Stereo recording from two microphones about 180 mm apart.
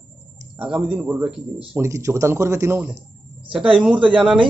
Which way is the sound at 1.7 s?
15° right (ahead or behind).